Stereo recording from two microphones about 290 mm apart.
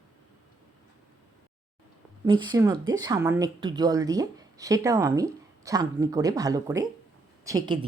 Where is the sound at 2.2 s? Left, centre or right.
Centre.